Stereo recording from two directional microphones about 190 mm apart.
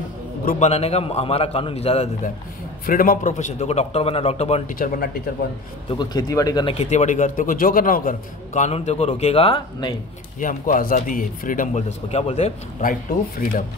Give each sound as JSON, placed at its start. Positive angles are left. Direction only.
{"t": 0.5, "sound": "a man's voice", "side_deg": 35}
{"t": 2.9, "sound": "a man's voice", "side_deg": 45}
{"t": 4.7, "sound": "speech", "side_deg": 50}
{"t": 5.9, "sound": "speech", "side_deg": 20}
{"t": 6.8, "sound": "a man's voice", "side_deg": 35}
{"t": 10.4, "sound": "speech", "side_deg": 45}